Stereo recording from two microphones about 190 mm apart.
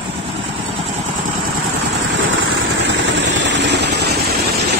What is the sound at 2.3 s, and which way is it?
Vehicle, 85° right.